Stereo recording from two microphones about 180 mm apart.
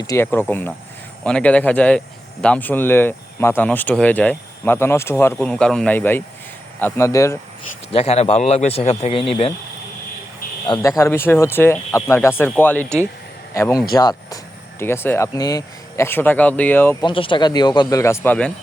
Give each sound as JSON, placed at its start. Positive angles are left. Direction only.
{"t": 0.1, "sound": "speech", "side_deg": 10}
{"t": 7.9, "sound": "a man's voice", "side_deg": 35}
{"t": 10.7, "sound": "speech", "side_deg": 20}
{"t": 17.0, "sound": "speech", "side_deg": 30}